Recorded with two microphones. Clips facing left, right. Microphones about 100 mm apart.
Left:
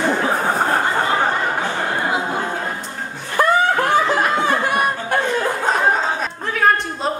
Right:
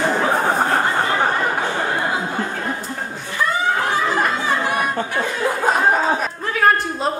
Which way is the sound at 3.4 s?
55° left (ahead or behind).